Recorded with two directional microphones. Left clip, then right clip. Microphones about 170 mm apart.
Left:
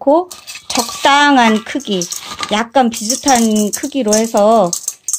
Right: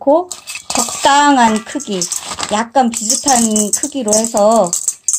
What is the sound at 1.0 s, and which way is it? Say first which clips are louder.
A woman's voice: even; 35° left (ahead or behind).